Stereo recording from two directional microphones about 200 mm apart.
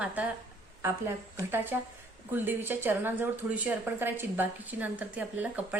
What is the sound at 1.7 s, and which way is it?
A woman's voice, 10° right (ahead or behind).